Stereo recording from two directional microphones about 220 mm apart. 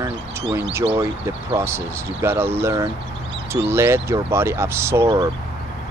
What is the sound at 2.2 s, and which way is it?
Speech, 10° right (ahead or behind).